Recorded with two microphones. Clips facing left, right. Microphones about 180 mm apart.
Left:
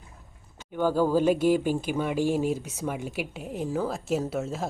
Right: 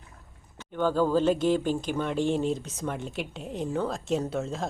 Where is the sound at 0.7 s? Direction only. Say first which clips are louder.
Left 1 dB; 10° left (ahead or behind).